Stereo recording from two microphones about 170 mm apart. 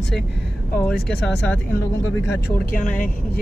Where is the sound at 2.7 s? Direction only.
50° left (ahead or behind).